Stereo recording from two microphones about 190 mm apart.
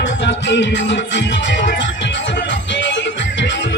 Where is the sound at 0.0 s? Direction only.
70° left (ahead or behind).